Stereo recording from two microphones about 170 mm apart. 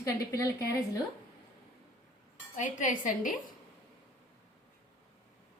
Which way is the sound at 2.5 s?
50° left (ahead or behind).